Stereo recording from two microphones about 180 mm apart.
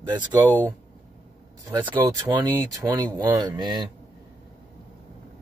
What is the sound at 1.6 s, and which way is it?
Speech, 15° right (ahead or behind).